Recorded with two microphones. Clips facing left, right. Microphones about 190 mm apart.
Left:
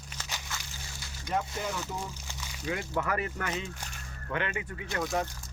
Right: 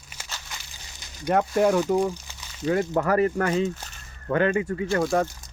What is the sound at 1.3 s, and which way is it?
Speech, 60° right (ahead or behind).